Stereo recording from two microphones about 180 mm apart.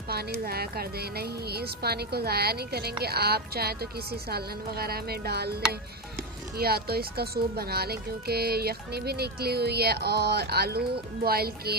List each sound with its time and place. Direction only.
0.1 s speech: 60° right (ahead or behind)
6.5 s speech: 60° right (ahead or behind)